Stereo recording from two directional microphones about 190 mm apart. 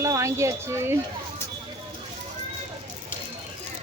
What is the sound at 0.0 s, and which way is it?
Speech, 15° right (ahead or behind).